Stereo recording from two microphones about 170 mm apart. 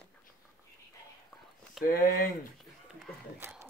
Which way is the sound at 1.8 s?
60° left (ahead or behind).